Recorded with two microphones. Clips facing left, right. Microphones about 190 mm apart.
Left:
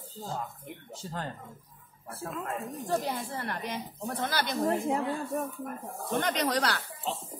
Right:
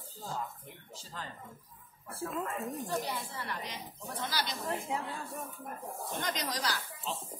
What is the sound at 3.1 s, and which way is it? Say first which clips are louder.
A woman's voice: left 5 dB; 55° left (ahead or behind).